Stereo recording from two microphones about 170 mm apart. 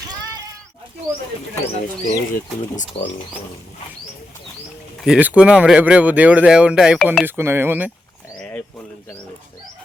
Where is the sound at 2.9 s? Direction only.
35° left (ahead or behind).